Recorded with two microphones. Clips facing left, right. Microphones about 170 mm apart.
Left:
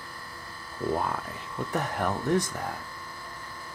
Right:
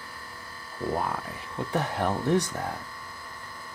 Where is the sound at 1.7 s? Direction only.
20° right (ahead or behind).